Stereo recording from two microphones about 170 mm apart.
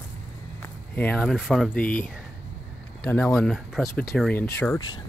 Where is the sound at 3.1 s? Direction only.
10° left (ahead or behind).